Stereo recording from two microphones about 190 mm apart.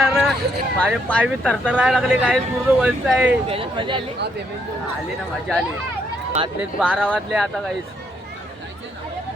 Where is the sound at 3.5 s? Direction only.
25° right (ahead or behind).